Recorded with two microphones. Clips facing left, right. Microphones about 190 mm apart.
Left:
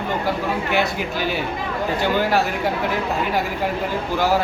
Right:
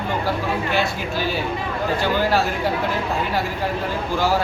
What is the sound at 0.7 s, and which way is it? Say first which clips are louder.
Speech: left 1 dB; 15° left (ahead or behind).